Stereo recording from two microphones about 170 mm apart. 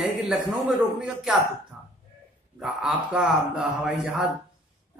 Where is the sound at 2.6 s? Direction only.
Centre (ahead or behind).